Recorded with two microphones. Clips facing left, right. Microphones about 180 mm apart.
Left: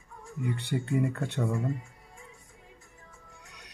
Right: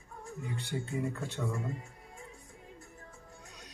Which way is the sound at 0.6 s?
65° left (ahead or behind).